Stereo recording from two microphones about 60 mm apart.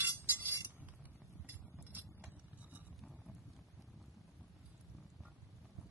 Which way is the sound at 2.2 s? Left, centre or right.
Right.